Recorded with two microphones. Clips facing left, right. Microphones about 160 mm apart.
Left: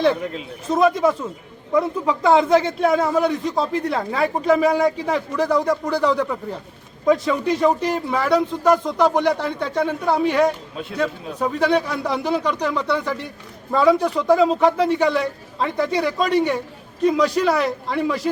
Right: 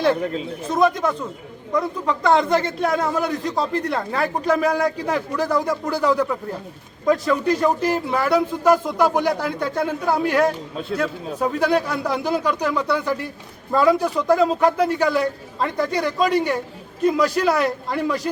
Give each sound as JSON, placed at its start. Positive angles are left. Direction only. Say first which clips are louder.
{"t": 0.7, "sound": "a man's voice", "louder": "left 2 dB", "side_deg": 0}